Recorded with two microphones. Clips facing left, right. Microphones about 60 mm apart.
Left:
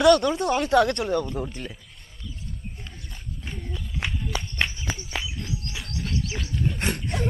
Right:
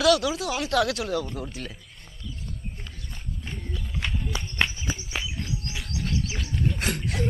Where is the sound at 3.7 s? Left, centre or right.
Centre.